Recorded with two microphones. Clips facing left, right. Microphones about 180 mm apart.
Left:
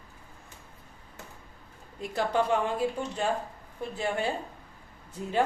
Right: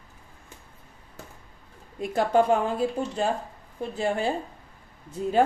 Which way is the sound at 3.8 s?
35° right (ahead or behind).